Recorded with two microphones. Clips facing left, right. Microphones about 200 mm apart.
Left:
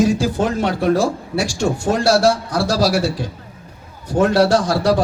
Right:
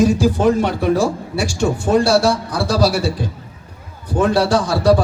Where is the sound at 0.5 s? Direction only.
60° left (ahead or behind).